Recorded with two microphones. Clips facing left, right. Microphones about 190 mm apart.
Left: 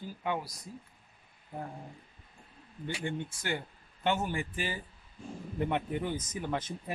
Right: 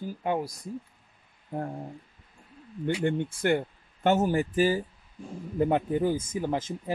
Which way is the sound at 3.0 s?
55° right (ahead or behind).